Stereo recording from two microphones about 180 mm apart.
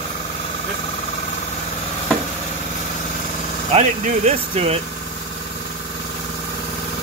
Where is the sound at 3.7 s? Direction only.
40° right (ahead or behind).